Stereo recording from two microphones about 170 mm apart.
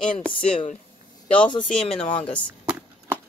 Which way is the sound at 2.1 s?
30° left (ahead or behind).